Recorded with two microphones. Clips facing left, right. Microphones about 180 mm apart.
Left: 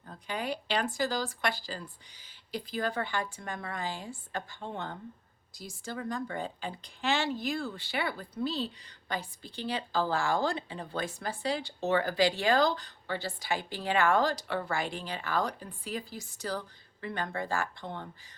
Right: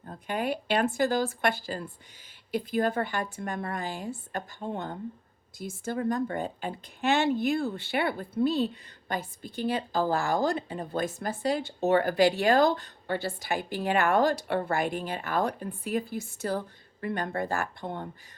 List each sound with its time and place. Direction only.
0.3 s speech: 55° right (ahead or behind)
4.3 s speech: 45° right (ahead or behind)
5.5 s speech: 50° right (ahead or behind)